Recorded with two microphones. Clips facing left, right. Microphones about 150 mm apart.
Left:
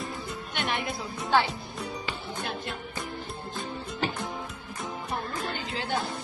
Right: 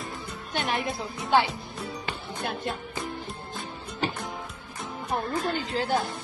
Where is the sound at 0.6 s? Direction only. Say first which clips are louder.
Right 3 dB; 45° right (ahead or behind).